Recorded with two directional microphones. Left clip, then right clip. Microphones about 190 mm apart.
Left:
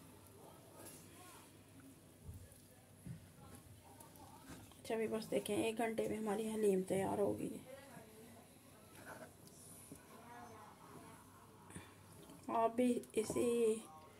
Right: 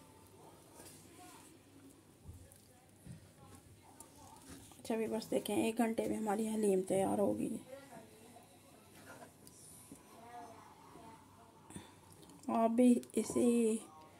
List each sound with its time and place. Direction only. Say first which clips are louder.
4.8 s a woman's voice: right 2 dB; 30° right (ahead or behind)
12.4 s speech: right 5 dB; 30° right (ahead or behind)